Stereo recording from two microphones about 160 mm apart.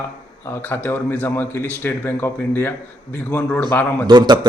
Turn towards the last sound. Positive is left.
turn(degrees=-25)  # may be behind; listen again after turning